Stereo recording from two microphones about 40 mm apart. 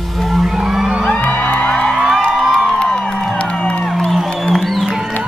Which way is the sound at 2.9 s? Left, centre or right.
Centre.